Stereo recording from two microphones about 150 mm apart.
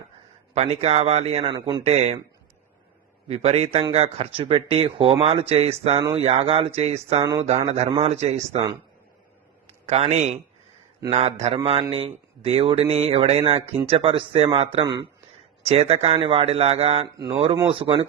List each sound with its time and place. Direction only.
0.5 s a man's voice: 45° right (ahead or behind)
1.5 s a man's voice: 25° right (ahead or behind)
1.8 s a man's voice: 45° right (ahead or behind)
3.2 s a man's voice: 45° right (ahead or behind)
7.2 s a man's voice: 25° right (ahead or behind)
7.7 s a man's voice: 45° right (ahead or behind)
9.8 s a man's voice: 45° right (ahead or behind)